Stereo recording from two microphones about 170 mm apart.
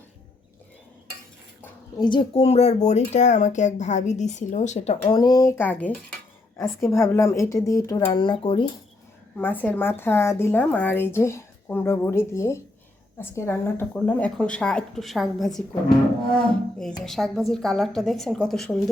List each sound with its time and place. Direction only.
2.0 s speech: 25° left (ahead or behind); by 5.1 s 45° left (ahead or behind)
5.1 s speech: 20° left (ahead or behind)
6.9 s speech: 15° left (ahead or behind)
9.3 s a woman's voice: 10° left (ahead or behind)